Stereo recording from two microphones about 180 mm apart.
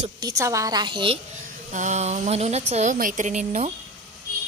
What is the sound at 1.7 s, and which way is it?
Speech, 40° right (ahead or behind).